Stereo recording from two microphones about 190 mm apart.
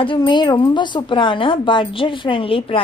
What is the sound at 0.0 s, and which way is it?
A woman's voice, 25° left (ahead or behind).